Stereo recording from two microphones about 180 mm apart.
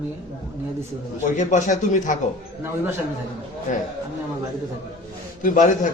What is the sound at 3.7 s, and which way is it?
Speech, 45° left (ahead or behind).